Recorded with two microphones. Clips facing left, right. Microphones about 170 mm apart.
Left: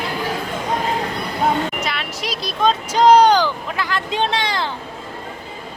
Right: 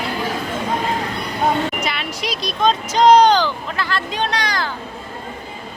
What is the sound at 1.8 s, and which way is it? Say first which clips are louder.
Vehicle: right 1 dB; centre (ahead or behind).